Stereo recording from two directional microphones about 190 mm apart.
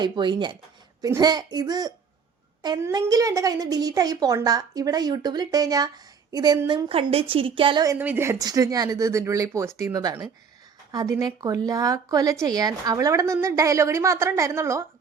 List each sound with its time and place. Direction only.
0.0 s a woman's voice: 25° right (ahead or behind)
7.9 s a woman's voice: 10° right (ahead or behind)